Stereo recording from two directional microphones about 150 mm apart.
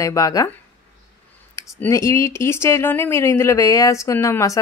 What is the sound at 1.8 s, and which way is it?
Speech, 20° left (ahead or behind).